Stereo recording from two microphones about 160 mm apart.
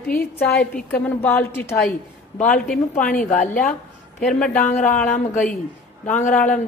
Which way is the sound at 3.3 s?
50° left (ahead or behind).